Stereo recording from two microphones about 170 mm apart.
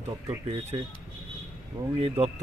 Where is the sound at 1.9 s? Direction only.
35° right (ahead or behind).